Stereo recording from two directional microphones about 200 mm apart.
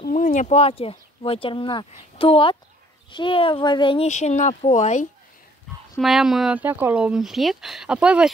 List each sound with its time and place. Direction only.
0.0 s speech: 40° left (ahead or behind)
5.9 s speech: centre (ahead or behind)